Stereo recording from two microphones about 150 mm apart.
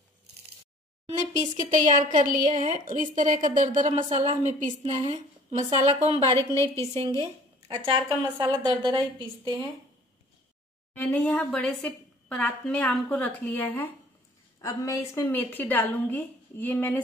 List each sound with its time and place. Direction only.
1.0 s a woman's voice: 55° right (ahead or behind)
6.3 s a woman's voice: 20° left (ahead or behind)
6.8 s a woman's voice: 45° right (ahead or behind)
11.0 s a woman's voice: 10° left (ahead or behind)